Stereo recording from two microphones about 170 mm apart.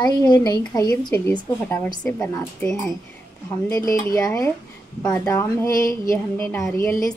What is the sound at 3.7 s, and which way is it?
Speech, 20° left (ahead or behind).